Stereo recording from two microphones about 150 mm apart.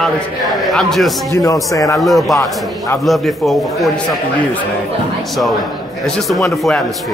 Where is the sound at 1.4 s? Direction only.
25° left (ahead or behind).